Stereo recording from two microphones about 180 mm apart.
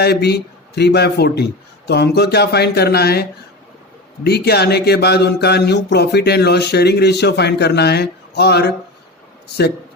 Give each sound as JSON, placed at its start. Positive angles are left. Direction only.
{"t": 0.0, "sound": "speech", "side_deg": 65}